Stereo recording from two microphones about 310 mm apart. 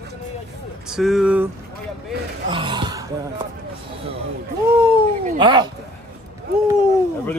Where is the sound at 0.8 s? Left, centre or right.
Centre.